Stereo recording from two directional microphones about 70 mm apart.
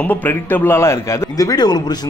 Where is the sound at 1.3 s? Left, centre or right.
Left.